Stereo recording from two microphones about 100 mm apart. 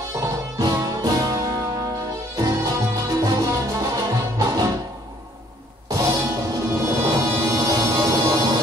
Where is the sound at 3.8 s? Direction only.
35° right (ahead or behind).